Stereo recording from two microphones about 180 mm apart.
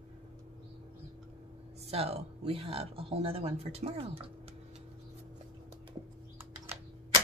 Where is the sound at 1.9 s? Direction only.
35° right (ahead or behind).